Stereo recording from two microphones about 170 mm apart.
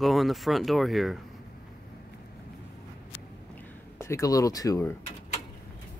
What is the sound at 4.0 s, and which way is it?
Speech, 15° left (ahead or behind).